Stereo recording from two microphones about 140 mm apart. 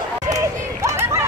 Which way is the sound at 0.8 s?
20° right (ahead or behind).